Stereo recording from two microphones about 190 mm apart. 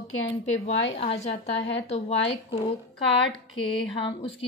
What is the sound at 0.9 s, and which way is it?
Speech, 30° left (ahead or behind).